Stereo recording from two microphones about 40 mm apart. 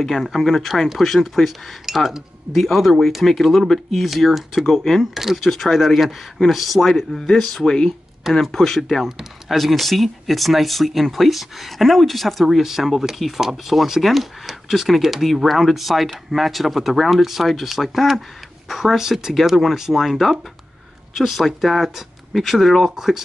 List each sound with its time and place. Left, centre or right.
0.0 s speech: centre
4.6 s speech: centre
5.1 s speech: centre
7.6 s speech: centre
8.2 s speech: centre